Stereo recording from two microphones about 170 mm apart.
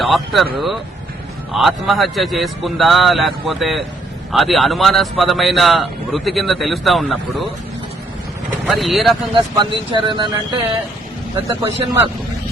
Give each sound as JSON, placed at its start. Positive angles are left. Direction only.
{"t": 0.0, "sound": "a man's voice", "side_deg": 0}
{"t": 8.6, "sound": "a man's voice", "side_deg": 0}
{"t": 9.3, "sound": "speech", "side_deg": -30}